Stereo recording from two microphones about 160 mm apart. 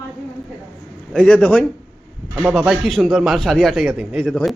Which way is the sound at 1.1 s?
5° left (ahead or behind).